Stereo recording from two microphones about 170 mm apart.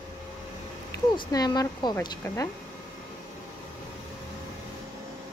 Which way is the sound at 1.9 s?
15° left (ahead or behind).